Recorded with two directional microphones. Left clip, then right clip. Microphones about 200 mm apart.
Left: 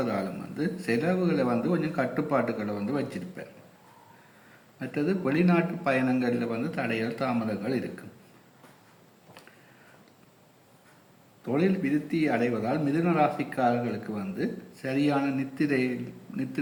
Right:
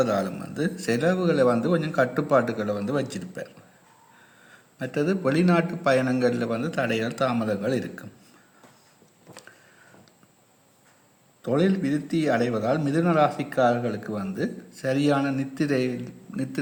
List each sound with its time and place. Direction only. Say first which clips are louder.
0.0 s a man's voice: right 6 dB; 50° right (ahead or behind)
4.8 s a man's voice: right 4 dB; 50° right (ahead or behind)
11.4 s a man's voice: right 3 dB; 50° right (ahead or behind)